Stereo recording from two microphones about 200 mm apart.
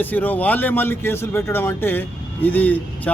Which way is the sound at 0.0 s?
10° left (ahead or behind).